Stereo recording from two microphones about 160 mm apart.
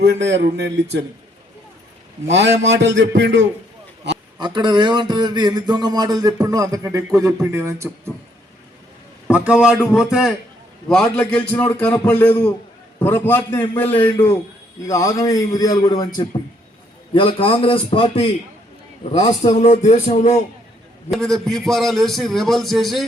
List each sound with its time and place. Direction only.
0.3 s a man's voice: 90° right
2.3 s a man's voice: 90° right
4.4 s speech: 30° right (ahead or behind)
9.3 s a man's voice: 5° right (ahead or behind); by 18.3 s 35° left (ahead or behind)
19.1 s a man's voice: 45° left (ahead or behind)
21.1 s a man's voice: 5° left (ahead or behind)